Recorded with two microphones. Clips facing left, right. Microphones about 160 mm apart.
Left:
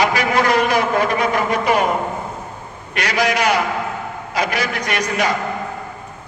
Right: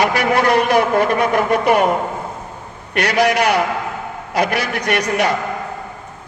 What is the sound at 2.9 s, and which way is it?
A man's voice, 60° right (ahead or behind).